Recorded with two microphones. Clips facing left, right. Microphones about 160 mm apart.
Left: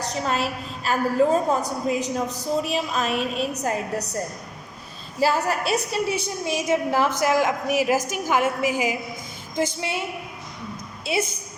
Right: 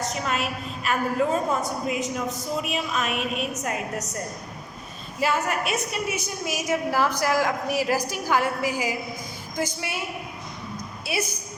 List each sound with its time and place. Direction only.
0.1 s a woman's voice: 35° left (ahead or behind)
5.2 s a woman's voice: 35° left (ahead or behind)
11.0 s a woman's voice: 25° left (ahead or behind)